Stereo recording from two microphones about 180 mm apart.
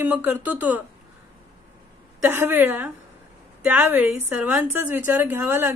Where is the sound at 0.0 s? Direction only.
10° right (ahead or behind).